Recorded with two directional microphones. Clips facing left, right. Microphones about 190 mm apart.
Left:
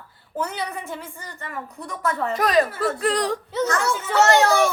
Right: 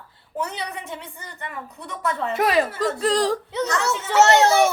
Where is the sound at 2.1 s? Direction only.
20° right (ahead or behind).